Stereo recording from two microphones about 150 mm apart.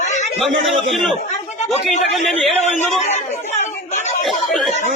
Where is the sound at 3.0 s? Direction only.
50° left (ahead or behind).